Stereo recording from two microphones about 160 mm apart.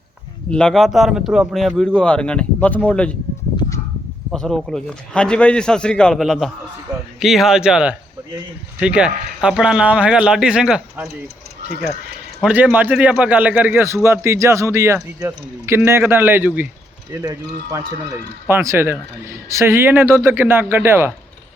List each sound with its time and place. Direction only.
0.5 s speech: 5° left (ahead or behind)
4.3 s speech: centre (ahead or behind)
12.4 s a man's voice: 5° right (ahead or behind)